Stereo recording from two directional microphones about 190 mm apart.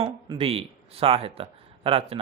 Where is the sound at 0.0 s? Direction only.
30° right (ahead or behind).